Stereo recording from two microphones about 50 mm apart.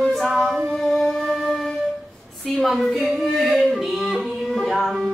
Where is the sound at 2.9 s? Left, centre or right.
Centre.